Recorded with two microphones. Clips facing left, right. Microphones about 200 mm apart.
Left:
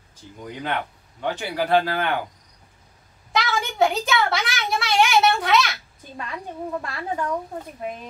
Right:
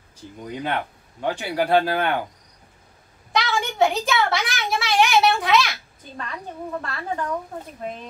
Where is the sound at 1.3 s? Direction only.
10° right (ahead or behind).